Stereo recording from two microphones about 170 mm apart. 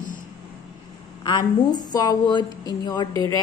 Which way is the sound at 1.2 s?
25° left (ahead or behind).